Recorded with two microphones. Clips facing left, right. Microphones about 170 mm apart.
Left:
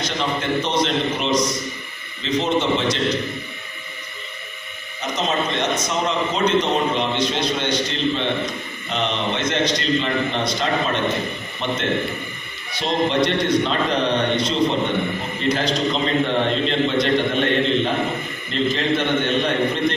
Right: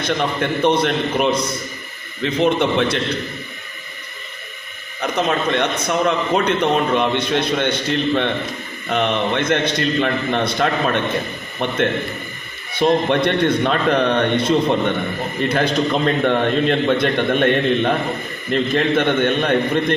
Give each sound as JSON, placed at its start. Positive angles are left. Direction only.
{"t": 0.0, "sound": "a man's voice", "side_deg": -55}
{"t": 4.9, "sound": "a man's voice", "side_deg": -60}
{"t": 12.8, "sound": "a man's voice", "side_deg": -55}